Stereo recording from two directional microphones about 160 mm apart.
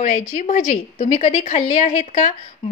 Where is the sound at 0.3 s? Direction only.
60° left (ahead or behind).